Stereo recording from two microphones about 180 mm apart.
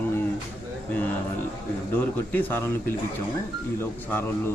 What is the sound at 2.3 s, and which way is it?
Speech, 10° left (ahead or behind).